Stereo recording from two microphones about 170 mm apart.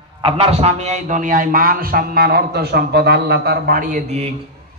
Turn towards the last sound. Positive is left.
turn(degrees=-45)  # may be behind; listen again after turning